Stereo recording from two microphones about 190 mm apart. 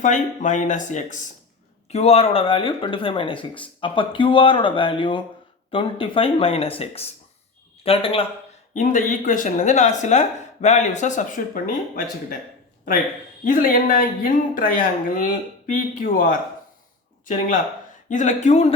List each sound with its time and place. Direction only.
0.0 s speech: 40° left (ahead or behind)
8.7 s speech: 40° left (ahead or behind)
13.4 s speech: 45° left (ahead or behind)